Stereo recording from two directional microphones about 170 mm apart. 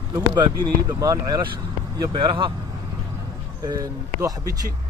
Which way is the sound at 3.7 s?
20° right (ahead or behind).